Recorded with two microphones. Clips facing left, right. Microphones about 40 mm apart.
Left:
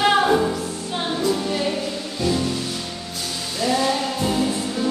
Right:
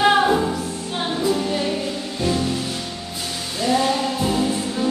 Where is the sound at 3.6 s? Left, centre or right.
Centre.